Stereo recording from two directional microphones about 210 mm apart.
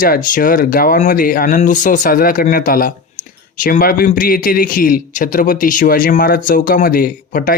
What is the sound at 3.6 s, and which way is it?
Speech, 40° left (ahead or behind).